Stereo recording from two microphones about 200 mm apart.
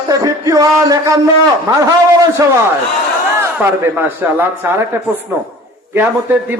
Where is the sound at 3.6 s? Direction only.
10° right (ahead or behind).